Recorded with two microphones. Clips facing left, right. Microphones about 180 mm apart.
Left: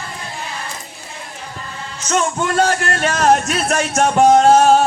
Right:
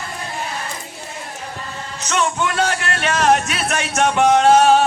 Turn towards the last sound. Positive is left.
turn(degrees=35)  # may be behind; listen again after turning